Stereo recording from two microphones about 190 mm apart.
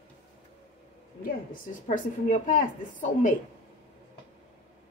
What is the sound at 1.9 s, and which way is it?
A woman's voice, 45° left (ahead or behind).